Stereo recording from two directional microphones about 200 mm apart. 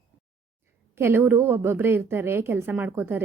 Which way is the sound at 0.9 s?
10° right (ahead or behind).